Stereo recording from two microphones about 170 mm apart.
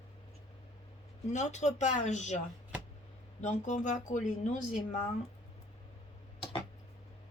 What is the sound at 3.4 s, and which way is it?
Speech, 45° left (ahead or behind).